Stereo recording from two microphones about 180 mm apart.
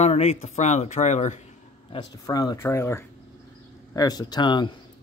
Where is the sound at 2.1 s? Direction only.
20° left (ahead or behind).